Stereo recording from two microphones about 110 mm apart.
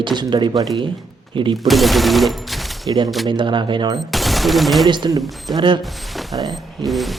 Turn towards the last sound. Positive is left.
turn(degrees=0)  # may be behind; listen again after turning